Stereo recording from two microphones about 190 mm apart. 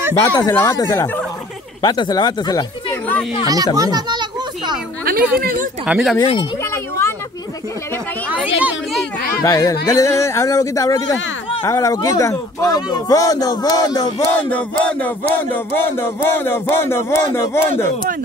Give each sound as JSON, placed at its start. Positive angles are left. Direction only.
{"t": 0.4, "sound": "music", "side_deg": 15}
{"t": 1.8, "sound": "speech", "side_deg": 20}
{"t": 3.4, "sound": "children playing", "side_deg": -20}
{"t": 5.0, "sound": "speech", "side_deg": -50}
{"t": 5.9, "sound": "speech", "side_deg": -5}
{"t": 6.1, "sound": "speech", "side_deg": 25}
{"t": 6.6, "sound": "a sound", "side_deg": 15}
{"t": 9.4, "sound": "speech", "side_deg": 20}
{"t": 9.8, "sound": "music", "side_deg": 15}
{"t": 11.6, "sound": "speech", "side_deg": 15}
{"t": 14.4, "sound": "music", "side_deg": 10}